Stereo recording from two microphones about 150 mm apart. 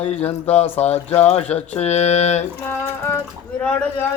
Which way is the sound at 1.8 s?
50° left (ahead or behind).